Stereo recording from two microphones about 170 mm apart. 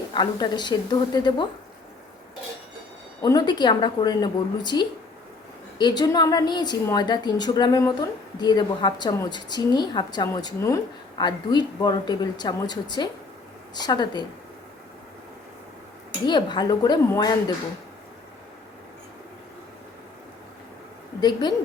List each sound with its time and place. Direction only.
0.1 s a woman's voice: 25° left (ahead or behind)
3.2 s a woman's voice: 20° left (ahead or behind)
16.2 s a woman's voice: 25° left (ahead or behind)
21.2 s a woman's voice: 25° left (ahead or behind)